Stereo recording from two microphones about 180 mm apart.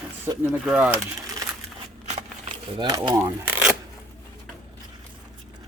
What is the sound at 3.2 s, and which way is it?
Speech, 10° right (ahead or behind).